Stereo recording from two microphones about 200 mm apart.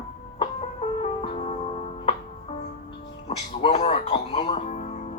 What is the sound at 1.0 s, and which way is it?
Music, 30° left (ahead or behind).